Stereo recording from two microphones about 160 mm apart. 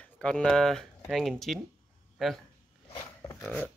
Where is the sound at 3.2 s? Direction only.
20° left (ahead or behind).